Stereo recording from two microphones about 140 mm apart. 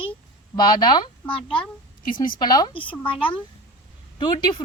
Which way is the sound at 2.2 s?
30° left (ahead or behind).